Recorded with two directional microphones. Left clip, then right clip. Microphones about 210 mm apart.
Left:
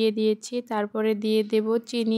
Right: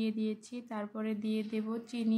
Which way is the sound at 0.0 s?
45° left (ahead or behind).